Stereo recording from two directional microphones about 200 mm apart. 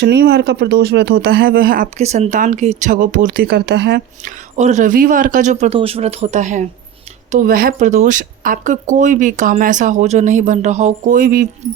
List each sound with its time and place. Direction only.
0.0 s speech: 55° right (ahead or behind)
4.5 s speech: 35° right (ahead or behind)